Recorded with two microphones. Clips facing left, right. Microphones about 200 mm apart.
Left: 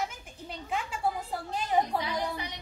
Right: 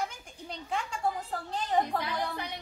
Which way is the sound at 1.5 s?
10° left (ahead or behind).